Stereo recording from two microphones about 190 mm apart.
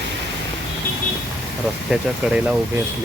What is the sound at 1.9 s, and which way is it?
Speech, 5° right (ahead or behind).